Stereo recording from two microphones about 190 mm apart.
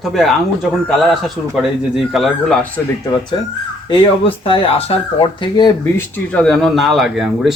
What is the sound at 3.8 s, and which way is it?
Speech, 30° left (ahead or behind).